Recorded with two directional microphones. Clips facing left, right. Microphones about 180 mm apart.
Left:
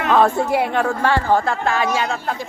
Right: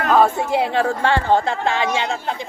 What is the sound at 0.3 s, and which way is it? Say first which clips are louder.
A woman's voice: left 1 dB; 25° right (ahead or behind).